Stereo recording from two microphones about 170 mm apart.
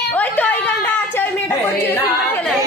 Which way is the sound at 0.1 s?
10° left (ahead or behind).